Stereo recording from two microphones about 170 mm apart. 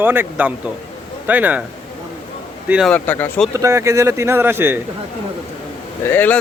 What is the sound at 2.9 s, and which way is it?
Speech, 10° left (ahead or behind).